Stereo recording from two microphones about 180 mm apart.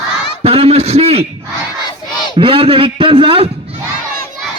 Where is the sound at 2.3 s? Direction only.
30° right (ahead or behind).